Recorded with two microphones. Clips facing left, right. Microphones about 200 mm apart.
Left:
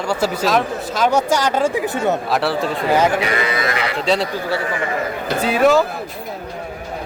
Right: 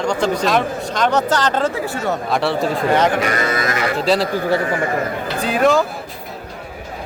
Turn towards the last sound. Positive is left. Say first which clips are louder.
# left 1 dB
turn(degrees=5)  # may be behind; listen again after turning